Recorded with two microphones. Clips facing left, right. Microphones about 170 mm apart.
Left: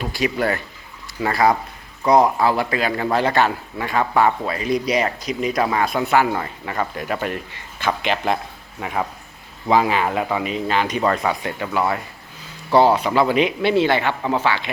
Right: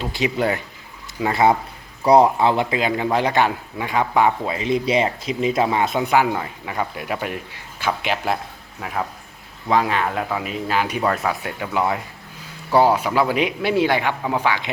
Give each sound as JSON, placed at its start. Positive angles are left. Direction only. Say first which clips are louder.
{"t": 0.0, "sound": "a man's voice", "louder": "even", "side_deg": -20}
{"t": 6.3, "sound": "a man's voice", "louder": "left 1 dB", "side_deg": -5}
{"t": 11.7, "sound": "a man's voice", "louder": "right 1 dB", "side_deg": -15}